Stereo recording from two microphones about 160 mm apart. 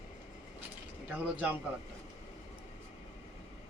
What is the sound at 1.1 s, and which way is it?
Speech, 10° right (ahead or behind).